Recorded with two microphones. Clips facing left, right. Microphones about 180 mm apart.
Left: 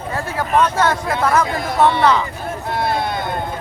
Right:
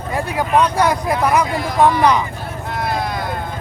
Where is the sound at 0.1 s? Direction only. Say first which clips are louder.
Right 2 dB; 15° right (ahead or behind).